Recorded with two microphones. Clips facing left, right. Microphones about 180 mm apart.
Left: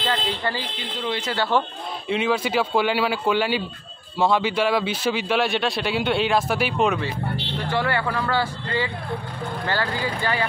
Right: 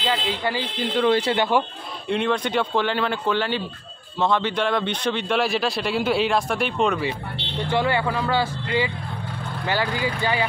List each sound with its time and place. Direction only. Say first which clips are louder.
1.3 s speech: right 2 dB; 15° right (ahead or behind)
2.0 s a man's voice: even; 5° left (ahead or behind)
7.7 s speech: right 2 dB; 20° right (ahead or behind)